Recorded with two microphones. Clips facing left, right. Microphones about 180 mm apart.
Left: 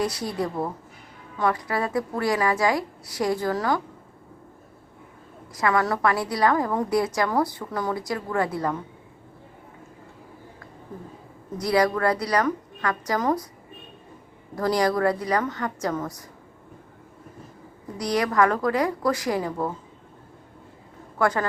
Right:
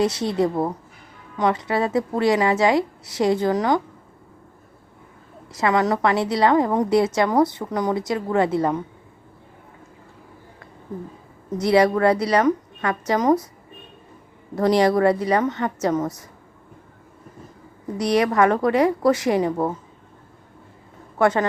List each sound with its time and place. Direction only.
0.0 s a woman's voice: 25° right (ahead or behind)
5.5 s a woman's voice: 20° right (ahead or behind)
11.5 s a woman's voice: 25° right (ahead or behind)
14.5 s a woman's voice: 25° right (ahead or behind)
17.9 s a woman's voice: 25° right (ahead or behind)
21.2 s a woman's voice: 25° right (ahead or behind)